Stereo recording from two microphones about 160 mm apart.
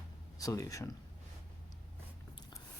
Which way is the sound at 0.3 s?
20° left (ahead or behind).